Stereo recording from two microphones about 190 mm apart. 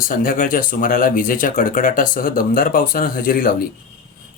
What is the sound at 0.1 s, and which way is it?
Speech, 45° left (ahead or behind).